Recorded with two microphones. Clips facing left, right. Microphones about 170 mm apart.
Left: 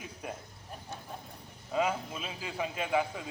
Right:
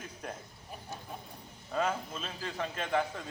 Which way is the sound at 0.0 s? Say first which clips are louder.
Left 1 dB; 10° left (ahead or behind).